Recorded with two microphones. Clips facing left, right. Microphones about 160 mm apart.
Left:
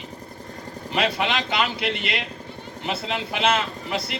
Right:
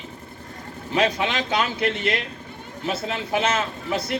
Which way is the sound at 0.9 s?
70° left (ahead or behind).